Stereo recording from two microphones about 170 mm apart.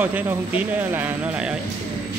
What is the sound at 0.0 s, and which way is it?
Speech, 10° right (ahead or behind).